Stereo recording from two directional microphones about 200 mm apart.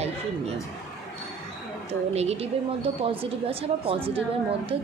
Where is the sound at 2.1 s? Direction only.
30° right (ahead or behind).